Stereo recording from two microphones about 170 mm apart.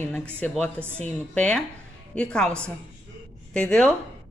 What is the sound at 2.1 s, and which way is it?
Speech, 5° left (ahead or behind).